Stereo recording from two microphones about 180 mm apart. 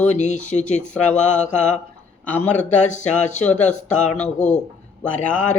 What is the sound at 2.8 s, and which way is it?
Speech, 40° left (ahead or behind).